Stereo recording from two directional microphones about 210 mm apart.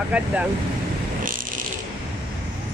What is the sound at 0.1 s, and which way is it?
Speech, 5° right (ahead or behind).